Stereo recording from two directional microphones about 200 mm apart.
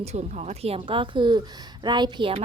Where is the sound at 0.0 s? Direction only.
35° right (ahead or behind).